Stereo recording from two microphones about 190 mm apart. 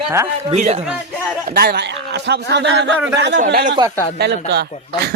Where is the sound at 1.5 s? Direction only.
55° right (ahead or behind).